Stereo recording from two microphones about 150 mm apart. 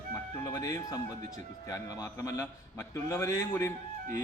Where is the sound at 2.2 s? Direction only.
20° left (ahead or behind).